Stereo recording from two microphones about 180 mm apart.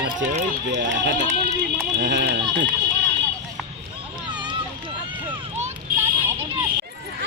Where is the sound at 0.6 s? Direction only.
80° right.